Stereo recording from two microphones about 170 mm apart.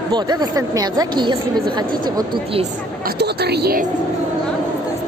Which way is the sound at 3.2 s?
70° right (ahead or behind).